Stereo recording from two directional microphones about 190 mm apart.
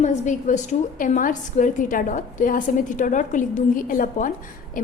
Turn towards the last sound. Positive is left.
turn(degrees=45)  # may be behind; listen again after turning